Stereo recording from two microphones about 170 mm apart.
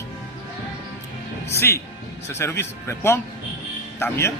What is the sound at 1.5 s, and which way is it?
Speech, 15° left (ahead or behind).